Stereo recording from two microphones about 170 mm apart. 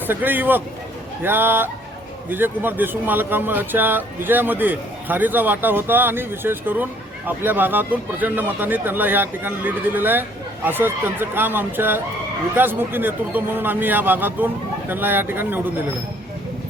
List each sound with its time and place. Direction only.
0.1 s speech: 10° right (ahead or behind)